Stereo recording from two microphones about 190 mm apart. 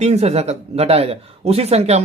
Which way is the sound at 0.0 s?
35° right (ahead or behind).